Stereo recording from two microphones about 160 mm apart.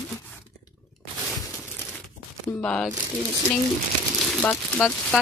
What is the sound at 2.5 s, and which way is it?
Speech, 5° left (ahead or behind).